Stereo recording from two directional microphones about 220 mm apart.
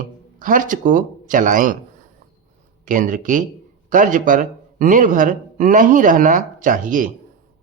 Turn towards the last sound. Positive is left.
turn(degrees=-35)  # may be behind; listen again after turning